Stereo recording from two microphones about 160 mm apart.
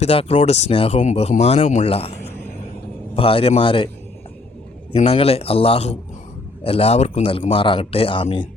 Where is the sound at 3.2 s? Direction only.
35° left (ahead or behind).